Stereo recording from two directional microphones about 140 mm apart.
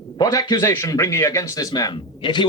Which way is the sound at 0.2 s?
25° left (ahead or behind).